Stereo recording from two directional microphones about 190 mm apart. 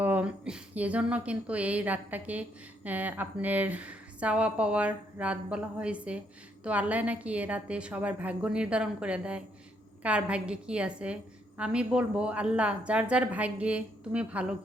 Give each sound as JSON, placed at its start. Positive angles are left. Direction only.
{"t": 0.0, "sound": "a woman's voice", "side_deg": -10}